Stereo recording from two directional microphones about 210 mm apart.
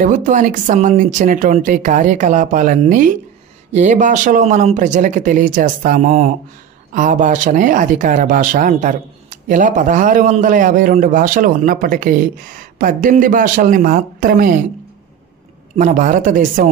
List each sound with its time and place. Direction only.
0.0 s speech: 40° right (ahead or behind)
15.7 s speech: 40° right (ahead or behind)